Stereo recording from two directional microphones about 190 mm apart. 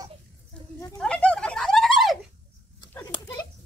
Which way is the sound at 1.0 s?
5° left (ahead or behind).